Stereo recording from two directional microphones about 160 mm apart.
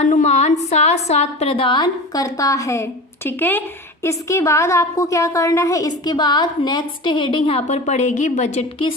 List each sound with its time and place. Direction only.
0.0 s a woman's voice: 50° left (ahead or behind)